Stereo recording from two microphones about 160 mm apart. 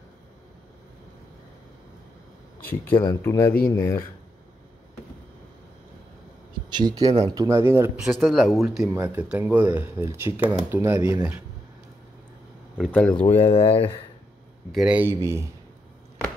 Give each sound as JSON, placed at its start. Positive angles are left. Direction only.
{"t": 2.6, "sound": "speech", "side_deg": 10}
{"t": 6.7, "sound": "speech", "side_deg": -25}
{"t": 8.0, "sound": "speech", "side_deg": 0}
{"t": 13.2, "sound": "speech", "side_deg": 40}
{"t": 14.7, "sound": "speech", "side_deg": -5}